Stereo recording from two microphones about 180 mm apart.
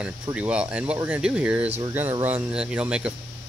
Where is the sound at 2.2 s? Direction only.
10° right (ahead or behind).